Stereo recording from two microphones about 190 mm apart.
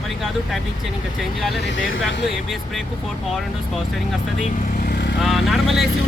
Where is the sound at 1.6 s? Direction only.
90° left.